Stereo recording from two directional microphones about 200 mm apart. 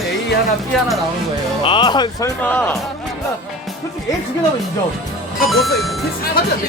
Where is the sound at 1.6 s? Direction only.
25° left (ahead or behind).